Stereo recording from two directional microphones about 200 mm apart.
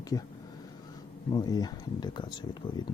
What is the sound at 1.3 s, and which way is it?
Speech, 20° left (ahead or behind).